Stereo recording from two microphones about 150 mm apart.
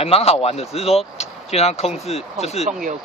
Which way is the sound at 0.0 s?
40° left (ahead or behind).